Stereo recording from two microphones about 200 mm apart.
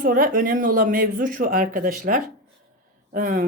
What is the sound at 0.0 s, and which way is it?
Speech, 45° right (ahead or behind).